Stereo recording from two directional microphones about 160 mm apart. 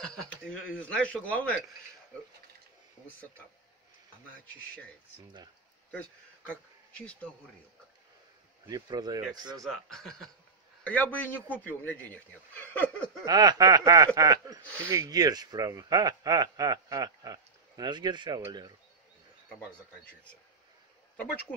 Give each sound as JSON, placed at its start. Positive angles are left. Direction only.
{"t": 0.2, "sound": "a man's voice", "side_deg": 5}
{"t": 5.9, "sound": "speech", "side_deg": 10}
{"t": 8.6, "sound": "speech", "side_deg": -25}
{"t": 9.7, "sound": "a man's voice", "side_deg": 5}
{"t": 13.2, "sound": "speech", "side_deg": -25}
{"t": 14.6, "sound": "a man's voice", "side_deg": 10}
{"t": 14.9, "sound": "speech", "side_deg": -20}
{"t": 19.7, "sound": "a man's voice", "side_deg": 10}